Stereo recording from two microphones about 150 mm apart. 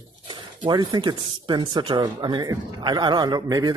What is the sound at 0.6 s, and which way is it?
Speech, 30° right (ahead or behind).